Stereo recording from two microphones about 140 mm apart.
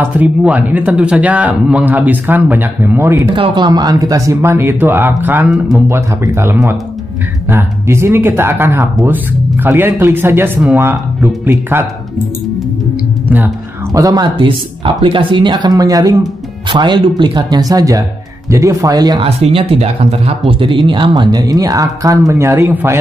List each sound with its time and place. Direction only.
0.0 s speech: 10° right (ahead or behind)
3.3 s speech: 35° right (ahead or behind); by 11.8 s 15° right (ahead or behind)
13.9 s speech: 25° right (ahead or behind)
19.2 s speech: 45° right (ahead or behind); by 22.9 s 15° right (ahead or behind)